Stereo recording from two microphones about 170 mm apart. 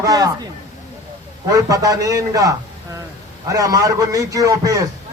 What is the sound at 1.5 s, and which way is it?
Speech, 20° right (ahead or behind).